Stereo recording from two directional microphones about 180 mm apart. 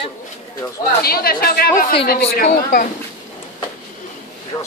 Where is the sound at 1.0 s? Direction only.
55° left (ahead or behind).